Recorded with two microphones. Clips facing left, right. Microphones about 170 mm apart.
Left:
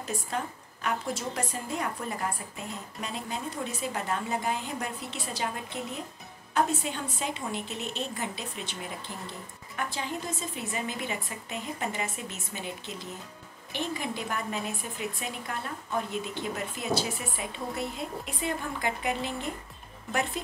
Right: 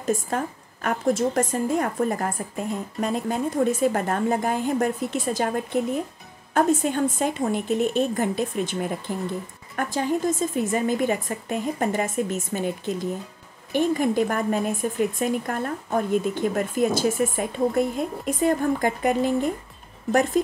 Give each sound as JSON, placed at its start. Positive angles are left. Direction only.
{"t": 0.0, "sound": "a woman's voice", "side_deg": -45}